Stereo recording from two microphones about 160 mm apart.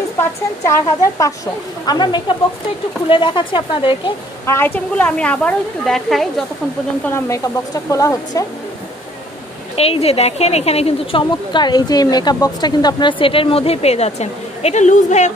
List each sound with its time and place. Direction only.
0.2 s a woman's voice: 15° left (ahead or behind)
4.5 s a woman's voice: 15° left (ahead or behind)
7.1 s a woman's voice: 20° left (ahead or behind)
9.8 s a woman's voice: 40° left (ahead or behind)